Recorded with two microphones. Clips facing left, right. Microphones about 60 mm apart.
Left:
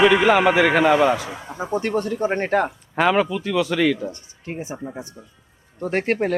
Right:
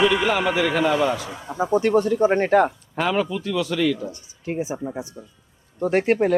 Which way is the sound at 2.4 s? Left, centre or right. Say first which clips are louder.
Right 2 dB; left.